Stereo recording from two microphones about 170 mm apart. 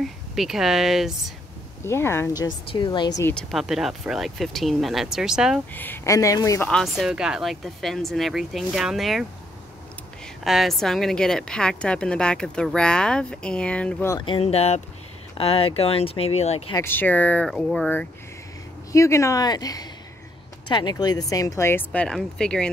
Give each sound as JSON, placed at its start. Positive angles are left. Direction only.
{"t": 0.4, "sound": "speech", "side_deg": 0}
{"t": 1.8, "sound": "speech", "side_deg": 15}
{"t": 2.7, "sound": "speech", "side_deg": 25}
{"t": 3.3, "sound": "speech", "side_deg": 0}
{"t": 5.7, "sound": "speech", "side_deg": 10}
{"t": 6.7, "sound": "speech", "side_deg": 0}
{"t": 10.2, "sound": "speech", "side_deg": 0}
{"t": 14.1, "sound": "speech", "side_deg": 30}
{"t": 16.7, "sound": "speech", "side_deg": 15}
{"t": 18.9, "sound": "speech", "side_deg": 15}